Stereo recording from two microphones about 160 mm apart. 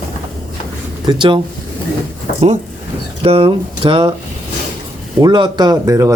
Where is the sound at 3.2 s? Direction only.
35° right (ahead or behind).